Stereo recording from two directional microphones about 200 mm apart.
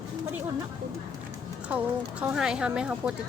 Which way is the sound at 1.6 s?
5° right (ahead or behind).